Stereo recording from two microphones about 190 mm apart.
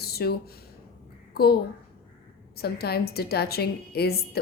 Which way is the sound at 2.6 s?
55° left (ahead or behind).